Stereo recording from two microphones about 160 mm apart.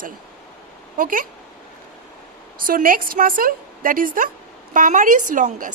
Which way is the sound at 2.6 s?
60° right (ahead or behind).